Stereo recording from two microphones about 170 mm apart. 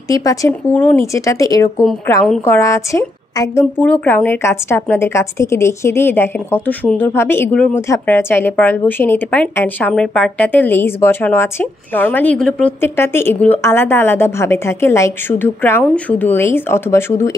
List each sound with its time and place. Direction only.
0.1 s a woman's voice: 20° left (ahead or behind)